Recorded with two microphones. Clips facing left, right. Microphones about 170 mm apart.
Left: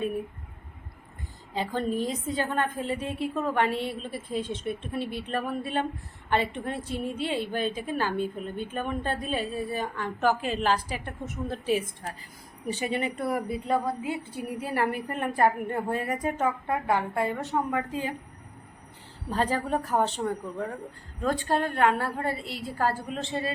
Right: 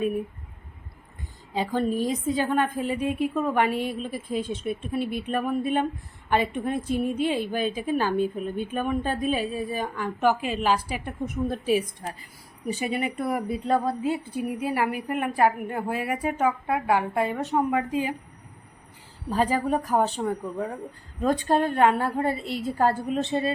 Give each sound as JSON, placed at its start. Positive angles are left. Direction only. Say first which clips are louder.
{"t": 1.5, "sound": "a woman's voice", "louder": "right 3 dB", "side_deg": -15}
{"t": 14.6, "sound": "a woman's voice", "louder": "left 1 dB", "side_deg": -10}
{"t": 19.3, "sound": "a woman's voice", "louder": "right 3 dB", "side_deg": -10}